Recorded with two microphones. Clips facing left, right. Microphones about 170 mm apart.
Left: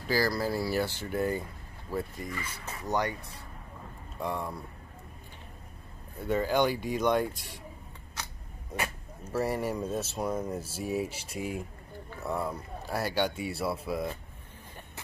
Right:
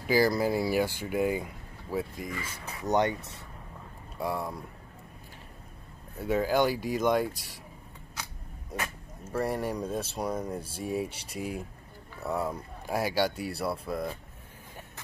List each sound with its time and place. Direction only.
0.0 s speech: 20° right (ahead or behind)
2.8 s speech: 20° right (ahead or behind)
4.2 s speech: 10° right (ahead or behind)
6.1 s speech: 5° right (ahead or behind)
8.7 s speech: 10° left (ahead or behind)